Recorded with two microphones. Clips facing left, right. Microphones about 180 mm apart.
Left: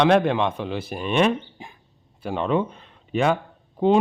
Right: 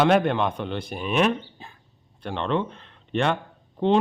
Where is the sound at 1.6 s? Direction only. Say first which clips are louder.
Left 3 dB; 15° left (ahead or behind).